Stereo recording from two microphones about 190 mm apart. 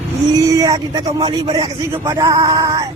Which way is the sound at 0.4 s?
20° right (ahead or behind).